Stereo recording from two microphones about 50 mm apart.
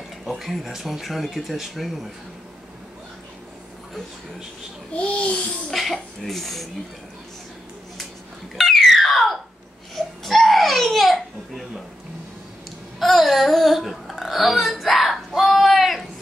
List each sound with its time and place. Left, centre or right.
0.2 s speech: centre
4.9 s a child's voice: left
5.7 s speech: centre
8.5 s a sound: centre
9.9 s crying: centre
13.0 s a sound: centre